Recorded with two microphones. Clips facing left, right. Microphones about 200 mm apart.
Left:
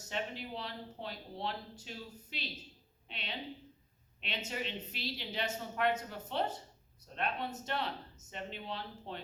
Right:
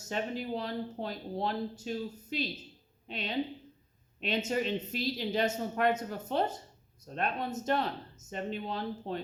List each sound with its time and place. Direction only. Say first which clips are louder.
0.1 s speech: right 6 dB; 45° right (ahead or behind)